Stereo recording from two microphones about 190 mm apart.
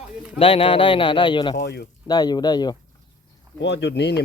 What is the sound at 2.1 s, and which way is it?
Speech, 20° left (ahead or behind).